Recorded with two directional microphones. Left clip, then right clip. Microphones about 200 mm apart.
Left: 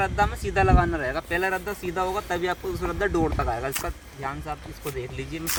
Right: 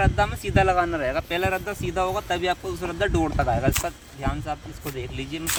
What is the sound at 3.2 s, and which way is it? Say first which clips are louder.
Speech: right 3 dB; 45° right (ahead or behind).